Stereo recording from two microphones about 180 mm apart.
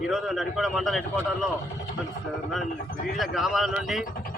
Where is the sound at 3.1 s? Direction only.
Centre (ahead or behind).